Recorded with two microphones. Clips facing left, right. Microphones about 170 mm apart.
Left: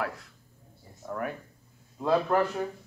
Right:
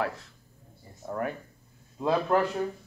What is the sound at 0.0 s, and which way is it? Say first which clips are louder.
Speech: right 2 dB; 25° right (ahead or behind).